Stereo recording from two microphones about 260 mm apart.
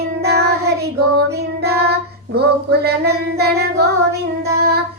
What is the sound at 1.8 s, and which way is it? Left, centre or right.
Female singing, right.